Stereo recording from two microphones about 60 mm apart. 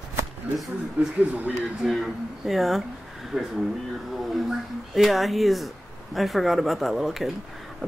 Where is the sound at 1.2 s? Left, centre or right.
Right.